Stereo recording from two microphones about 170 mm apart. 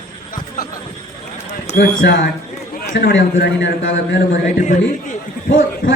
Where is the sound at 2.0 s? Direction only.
90° left.